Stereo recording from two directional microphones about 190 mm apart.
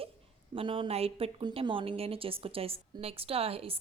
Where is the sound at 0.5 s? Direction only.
25° right (ahead or behind).